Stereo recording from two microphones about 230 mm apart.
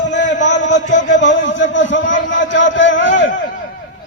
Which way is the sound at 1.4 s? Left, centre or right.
Left.